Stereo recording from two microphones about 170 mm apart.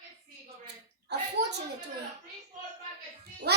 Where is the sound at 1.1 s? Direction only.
75° right (ahead or behind).